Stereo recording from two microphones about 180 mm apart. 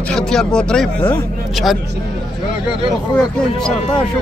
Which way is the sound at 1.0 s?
25° left (ahead or behind).